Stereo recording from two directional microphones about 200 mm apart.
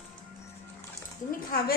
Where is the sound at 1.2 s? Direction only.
20° left (ahead or behind).